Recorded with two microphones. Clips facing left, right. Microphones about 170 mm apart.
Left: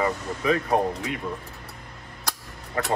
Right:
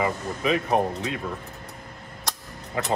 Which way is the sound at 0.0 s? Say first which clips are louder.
Even; 20° right (ahead or behind).